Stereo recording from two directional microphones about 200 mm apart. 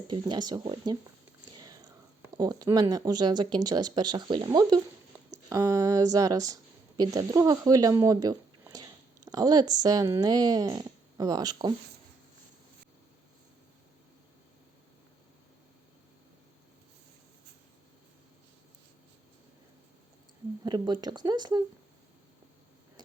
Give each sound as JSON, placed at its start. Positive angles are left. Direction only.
{"t": 0.1, "sound": "speech", "side_deg": -20}
{"t": 1.5, "sound": "whispering", "side_deg": -20}
{"t": 2.3, "sound": "a woman's voice", "side_deg": -20}
{"t": 20.7, "sound": "speech", "side_deg": -20}